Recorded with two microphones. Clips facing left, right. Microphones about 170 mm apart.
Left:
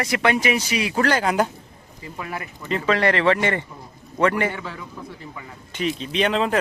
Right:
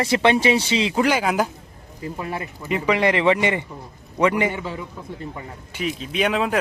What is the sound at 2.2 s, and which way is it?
Speech, 25° right (ahead or behind).